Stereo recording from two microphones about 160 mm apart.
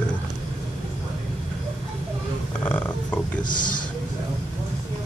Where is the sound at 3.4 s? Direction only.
55° left (ahead or behind).